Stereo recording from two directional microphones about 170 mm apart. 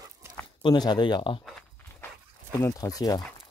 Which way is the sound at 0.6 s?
25° left (ahead or behind).